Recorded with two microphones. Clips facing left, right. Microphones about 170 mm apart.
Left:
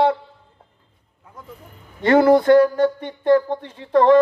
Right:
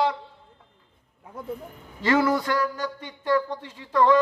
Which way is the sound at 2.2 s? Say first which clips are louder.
Left 11 dB; 30° left (ahead or behind).